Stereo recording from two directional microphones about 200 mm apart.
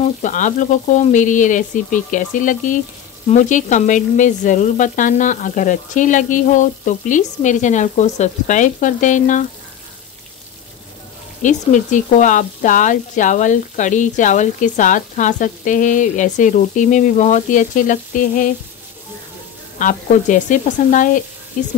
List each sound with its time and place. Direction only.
0.0 s speech: 40° left (ahead or behind)
11.4 s speech: 40° left (ahead or behind)
19.8 s speech: 40° left (ahead or behind)